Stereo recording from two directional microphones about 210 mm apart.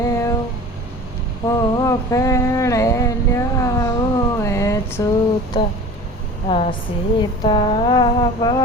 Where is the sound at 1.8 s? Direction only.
15° left (ahead or behind).